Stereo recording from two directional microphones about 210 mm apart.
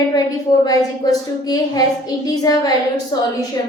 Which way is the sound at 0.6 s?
20° left (ahead or behind).